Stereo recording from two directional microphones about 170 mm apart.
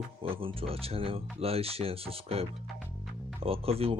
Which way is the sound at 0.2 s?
30° right (ahead or behind).